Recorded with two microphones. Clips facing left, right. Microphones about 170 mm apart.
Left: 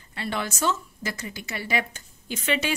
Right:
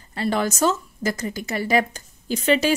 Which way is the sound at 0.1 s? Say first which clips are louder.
Right 7 dB; 40° right (ahead or behind).